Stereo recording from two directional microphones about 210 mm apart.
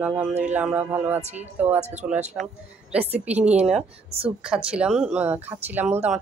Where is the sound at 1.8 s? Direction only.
30° right (ahead or behind).